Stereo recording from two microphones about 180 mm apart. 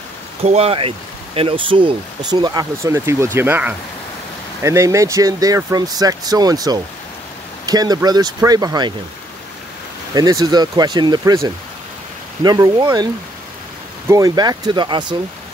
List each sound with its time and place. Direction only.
0.4 s speech: 35° right (ahead or behind)
10.1 s speech: 20° right (ahead or behind)